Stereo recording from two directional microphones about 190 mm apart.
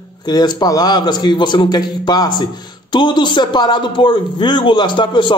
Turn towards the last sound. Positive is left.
turn(degrees=25)  # may be behind; listen again after turning